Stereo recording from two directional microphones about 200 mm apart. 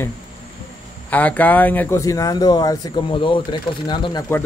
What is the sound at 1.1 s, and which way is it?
Speech, 5° left (ahead or behind).